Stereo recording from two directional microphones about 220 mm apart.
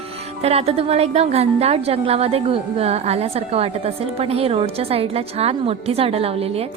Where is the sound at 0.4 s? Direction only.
30° right (ahead or behind).